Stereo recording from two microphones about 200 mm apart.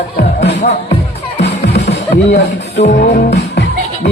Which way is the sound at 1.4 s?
55° left (ahead or behind).